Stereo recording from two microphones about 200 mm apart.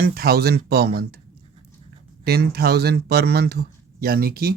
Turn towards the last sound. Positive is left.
turn(degrees=-50)  # may be behind; listen again after turning